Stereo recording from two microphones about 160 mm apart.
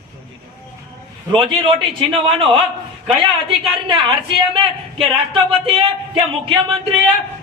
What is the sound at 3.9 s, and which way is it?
Speech, 30° right (ahead or behind).